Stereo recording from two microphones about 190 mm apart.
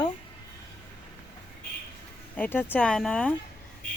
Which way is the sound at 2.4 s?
10° left (ahead or behind).